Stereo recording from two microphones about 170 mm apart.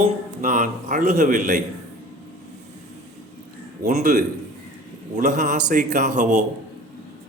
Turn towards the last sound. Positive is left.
turn(degrees=-45)  # may be behind; listen again after turning